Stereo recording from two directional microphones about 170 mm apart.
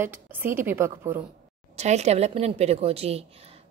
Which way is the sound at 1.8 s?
40° right (ahead or behind).